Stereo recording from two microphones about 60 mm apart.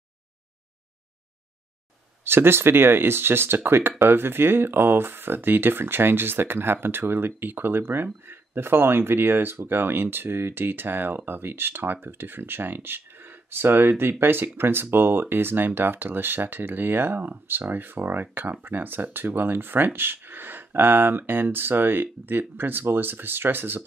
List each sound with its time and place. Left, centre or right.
2.2 s speech: right